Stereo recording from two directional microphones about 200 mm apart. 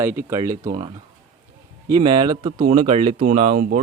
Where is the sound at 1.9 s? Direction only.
20° right (ahead or behind); by 3.8 s 45° right (ahead or behind).